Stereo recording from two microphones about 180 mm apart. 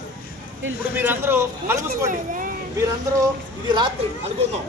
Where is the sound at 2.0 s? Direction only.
45° right (ahead or behind).